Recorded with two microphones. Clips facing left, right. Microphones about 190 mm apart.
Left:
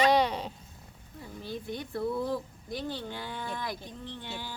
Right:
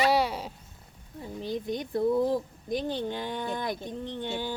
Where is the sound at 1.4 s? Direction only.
15° right (ahead or behind).